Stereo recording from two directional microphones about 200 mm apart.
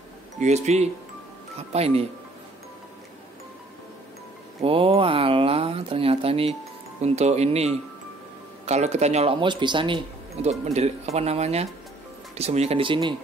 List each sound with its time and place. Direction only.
0.4 s speech: 35° right (ahead or behind)
4.6 s speech: 30° right (ahead or behind)